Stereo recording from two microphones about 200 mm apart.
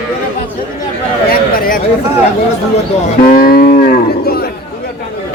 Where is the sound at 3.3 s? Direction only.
45° left (ahead or behind).